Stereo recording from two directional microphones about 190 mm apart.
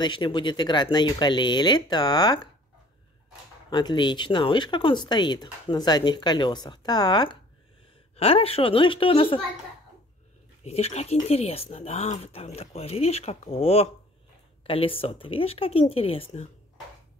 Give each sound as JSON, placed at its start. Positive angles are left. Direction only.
{"t": 0.0, "sound": "speech", "side_deg": 25}
{"t": 3.7, "sound": "speech", "side_deg": 25}
{"t": 10.6, "sound": "speech", "side_deg": 35}